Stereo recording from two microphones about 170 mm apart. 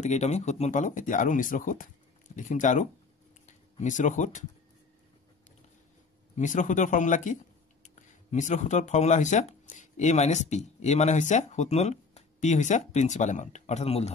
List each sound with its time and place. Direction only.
0.0 s speech: 40° left (ahead or behind)
6.3 s speech: 50° left (ahead or behind)